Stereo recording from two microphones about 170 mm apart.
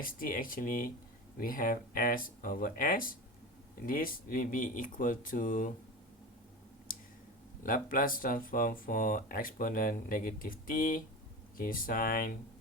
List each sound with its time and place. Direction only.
0.0 s speech: 55° left (ahead or behind)
7.6 s speech: 55° left (ahead or behind)